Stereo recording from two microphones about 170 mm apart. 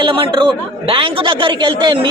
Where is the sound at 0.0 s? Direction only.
30° right (ahead or behind).